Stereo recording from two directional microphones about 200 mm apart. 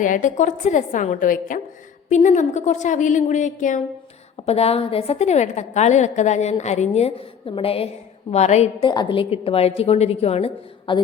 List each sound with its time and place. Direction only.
0.0 s a woman's voice: 40° left (ahead or behind)